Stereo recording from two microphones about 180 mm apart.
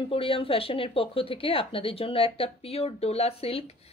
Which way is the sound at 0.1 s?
30° left (ahead or behind).